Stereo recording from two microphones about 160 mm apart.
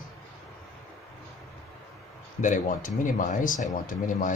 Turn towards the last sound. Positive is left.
turn(degrees=55)  # may be behind; listen again after turning